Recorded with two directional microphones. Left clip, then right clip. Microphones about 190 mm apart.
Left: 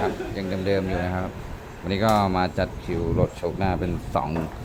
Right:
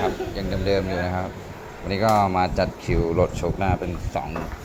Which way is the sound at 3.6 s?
25° left (ahead or behind).